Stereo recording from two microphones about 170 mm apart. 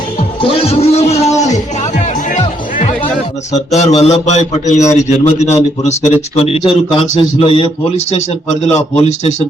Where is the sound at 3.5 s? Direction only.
40° left (ahead or behind).